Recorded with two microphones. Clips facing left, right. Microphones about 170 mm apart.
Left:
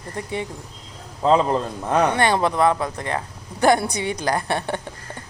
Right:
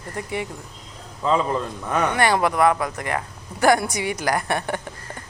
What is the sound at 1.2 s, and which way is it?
A man's voice, 30° left (ahead or behind).